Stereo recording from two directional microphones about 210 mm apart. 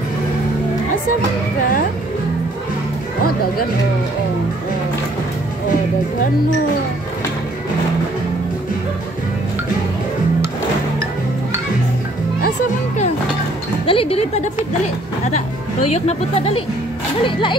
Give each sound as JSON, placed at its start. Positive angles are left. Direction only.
{"t": 13.8, "sound": "speech", "side_deg": 25}
{"t": 15.9, "sound": "speech", "side_deg": 30}